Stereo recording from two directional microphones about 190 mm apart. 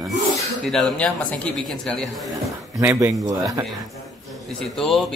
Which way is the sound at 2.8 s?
10° right (ahead or behind).